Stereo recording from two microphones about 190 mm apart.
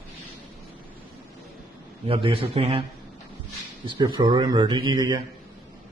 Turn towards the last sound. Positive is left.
turn(degrees=-20)  # may be behind; listen again after turning